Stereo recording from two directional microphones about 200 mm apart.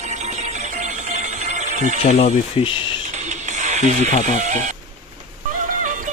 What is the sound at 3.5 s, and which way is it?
Speech, 35° right (ahead or behind).